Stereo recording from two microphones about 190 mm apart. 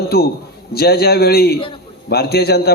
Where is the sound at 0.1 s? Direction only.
55° left (ahead or behind).